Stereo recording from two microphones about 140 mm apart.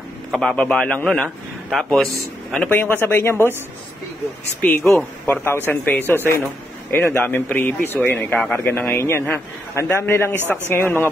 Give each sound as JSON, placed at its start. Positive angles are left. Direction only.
{"t": 0.3, "sound": "a man's voice", "side_deg": 5}
{"t": 4.6, "sound": "speech", "side_deg": 10}